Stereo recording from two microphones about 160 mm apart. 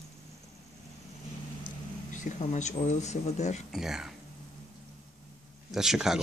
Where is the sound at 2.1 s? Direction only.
50° left (ahead or behind).